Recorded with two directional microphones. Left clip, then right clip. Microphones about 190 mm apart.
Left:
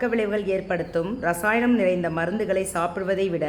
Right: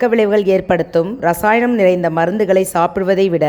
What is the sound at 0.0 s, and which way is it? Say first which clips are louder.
A woman's voice: right 11 dB; 40° right (ahead or behind).